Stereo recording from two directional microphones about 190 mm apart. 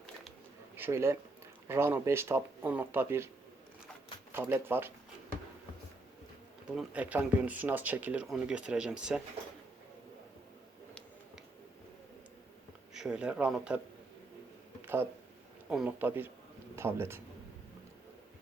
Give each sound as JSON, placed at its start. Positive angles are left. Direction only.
{"t": 0.8, "sound": "speech", "side_deg": -15}
{"t": 4.3, "sound": "speech", "side_deg": -10}
{"t": 6.7, "sound": "speech", "side_deg": -5}
{"t": 12.9, "sound": "speech", "side_deg": -5}
{"t": 15.7, "sound": "a man's voice", "side_deg": -5}